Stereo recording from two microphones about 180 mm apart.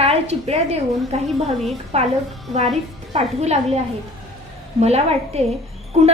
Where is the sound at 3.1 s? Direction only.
35° right (ahead or behind).